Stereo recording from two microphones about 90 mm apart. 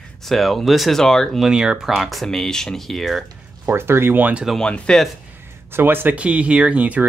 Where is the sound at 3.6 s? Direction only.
25° right (ahead or behind).